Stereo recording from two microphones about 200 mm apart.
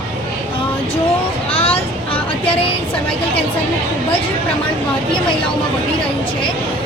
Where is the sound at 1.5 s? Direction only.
30° left (ahead or behind).